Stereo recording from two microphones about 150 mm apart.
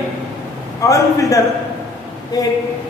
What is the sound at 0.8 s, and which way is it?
Speech, 20° left (ahead or behind).